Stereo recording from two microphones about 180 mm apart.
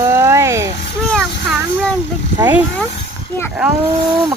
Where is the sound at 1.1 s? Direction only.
Centre (ahead or behind).